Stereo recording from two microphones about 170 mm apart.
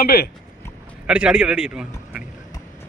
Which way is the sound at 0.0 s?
65° left (ahead or behind).